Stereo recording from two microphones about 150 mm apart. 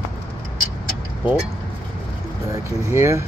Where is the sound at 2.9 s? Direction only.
20° right (ahead or behind).